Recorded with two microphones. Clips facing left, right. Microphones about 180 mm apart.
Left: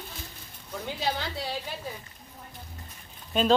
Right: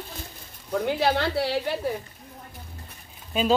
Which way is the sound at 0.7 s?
65° right (ahead or behind).